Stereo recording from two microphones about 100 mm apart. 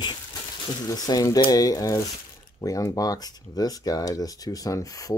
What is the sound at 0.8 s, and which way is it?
Speech, 40° left (ahead or behind).